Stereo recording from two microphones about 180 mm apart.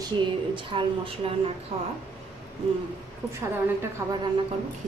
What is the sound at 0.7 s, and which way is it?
Speech, 30° right (ahead or behind).